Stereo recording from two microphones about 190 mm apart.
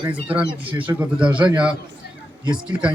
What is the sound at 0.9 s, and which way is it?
Speech, 10° right (ahead or behind).